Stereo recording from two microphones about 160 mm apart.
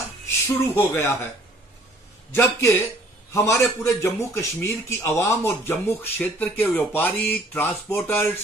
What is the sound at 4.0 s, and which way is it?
Speech, 20° left (ahead or behind).